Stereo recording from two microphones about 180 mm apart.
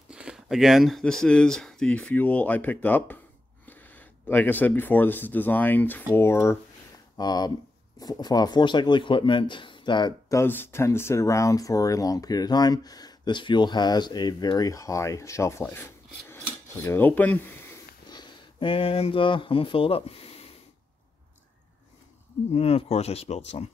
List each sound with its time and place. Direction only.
0.1 s speech: 5° right (ahead or behind); by 10.4 s 25° left (ahead or behind)
10.4 s speech: 10° left (ahead or behind)
18.1 s speech: 25° left (ahead or behind)
22.5 s speech: 35° left (ahead or behind)